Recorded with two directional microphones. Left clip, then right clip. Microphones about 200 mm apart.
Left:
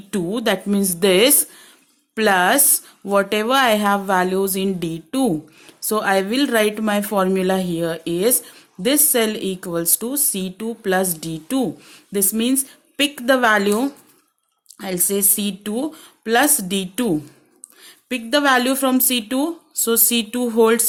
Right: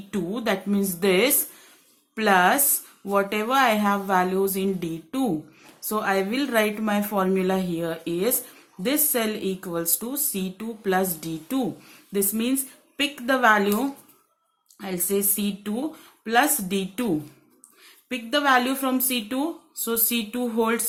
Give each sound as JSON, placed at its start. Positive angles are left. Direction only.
{"t": 0.1, "sound": "a woman's voice", "side_deg": 40}